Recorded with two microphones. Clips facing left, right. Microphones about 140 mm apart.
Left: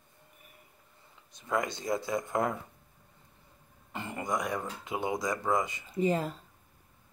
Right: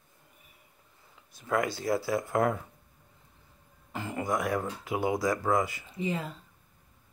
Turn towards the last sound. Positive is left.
turn(degrees=40)  # may be behind; listen again after turning